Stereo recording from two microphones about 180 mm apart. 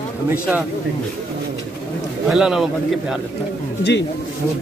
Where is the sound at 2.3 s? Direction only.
Centre (ahead or behind).